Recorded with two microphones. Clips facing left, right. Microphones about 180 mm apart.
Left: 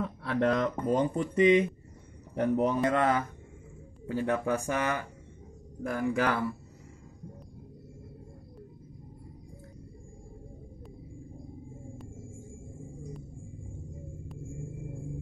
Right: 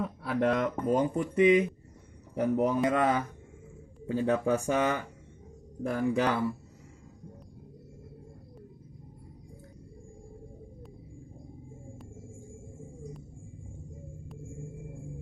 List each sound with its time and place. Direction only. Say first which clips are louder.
0.0 s a man's voice: even; 5° right (ahead or behind); by 6.4 s 25° right (ahead or behind)